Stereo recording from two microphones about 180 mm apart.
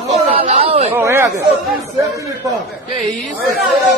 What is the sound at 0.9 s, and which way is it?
A man's voice, 15° right (ahead or behind).